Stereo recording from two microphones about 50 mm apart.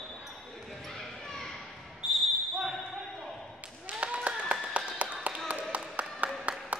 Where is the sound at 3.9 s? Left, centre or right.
Right.